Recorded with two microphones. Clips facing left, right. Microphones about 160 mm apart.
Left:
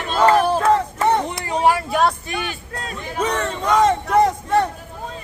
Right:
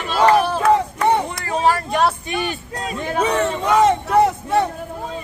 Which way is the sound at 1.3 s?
15° left (ahead or behind).